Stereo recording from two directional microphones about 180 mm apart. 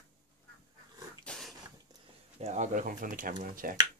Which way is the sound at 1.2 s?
5° left (ahead or behind).